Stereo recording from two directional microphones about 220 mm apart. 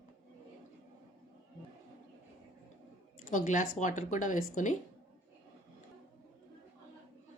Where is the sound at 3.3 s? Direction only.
35° left (ahead or behind).